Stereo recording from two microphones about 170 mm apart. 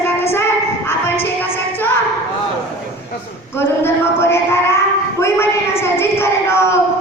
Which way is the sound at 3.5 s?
15° left (ahead or behind).